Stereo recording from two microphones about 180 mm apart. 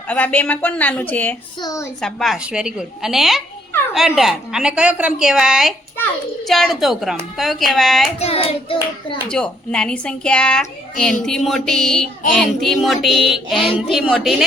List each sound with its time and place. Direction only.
0.1 s a woman's voice: 10° left (ahead or behind)
2.0 s a woman's voice: 5° left (ahead or behind)
8.2 s hands: 35° left (ahead or behind)
9.3 s a woman's voice: 5° left (ahead or behind)